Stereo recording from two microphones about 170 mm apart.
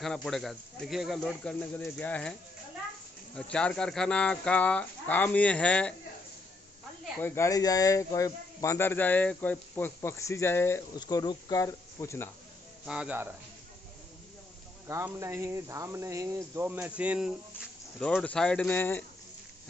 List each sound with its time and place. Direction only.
0.0 s speech: 5° left (ahead or behind)
3.3 s a man's voice: 5° left (ahead or behind)
7.2 s a man's voice: 15° left (ahead or behind)
12.8 s speech: 5° right (ahead or behind)
14.9 s speech: 15° right (ahead or behind)
18.0 s a man's voice: 5° left (ahead or behind)